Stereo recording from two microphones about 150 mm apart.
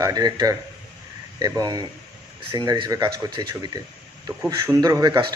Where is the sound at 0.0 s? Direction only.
25° right (ahead or behind).